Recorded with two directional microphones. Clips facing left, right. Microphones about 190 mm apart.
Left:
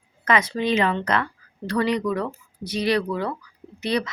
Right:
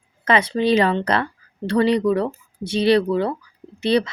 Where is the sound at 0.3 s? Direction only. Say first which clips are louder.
Right 4 dB; 30° right (ahead or behind).